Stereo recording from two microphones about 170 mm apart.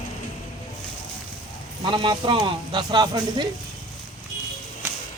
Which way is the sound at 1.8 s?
30° right (ahead or behind).